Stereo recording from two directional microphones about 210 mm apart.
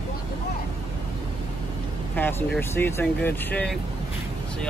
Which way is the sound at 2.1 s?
10° left (ahead or behind).